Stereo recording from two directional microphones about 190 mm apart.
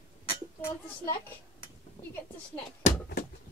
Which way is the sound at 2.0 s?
30° left (ahead or behind).